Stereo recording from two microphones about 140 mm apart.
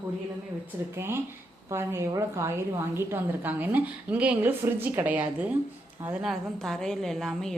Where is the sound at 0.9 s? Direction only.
15° right (ahead or behind).